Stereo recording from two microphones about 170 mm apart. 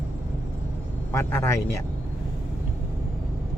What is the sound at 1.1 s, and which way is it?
Speech, 15° left (ahead or behind).